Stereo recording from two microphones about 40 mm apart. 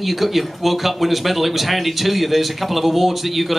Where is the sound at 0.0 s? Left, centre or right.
Centre.